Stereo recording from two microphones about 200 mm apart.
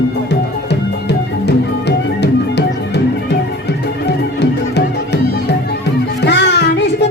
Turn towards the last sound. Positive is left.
turn(degrees=60)  # may be behind; listen again after turning